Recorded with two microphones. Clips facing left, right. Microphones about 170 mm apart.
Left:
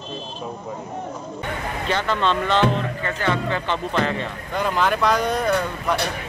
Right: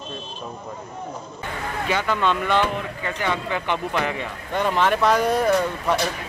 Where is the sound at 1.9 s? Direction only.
10° right (ahead or behind).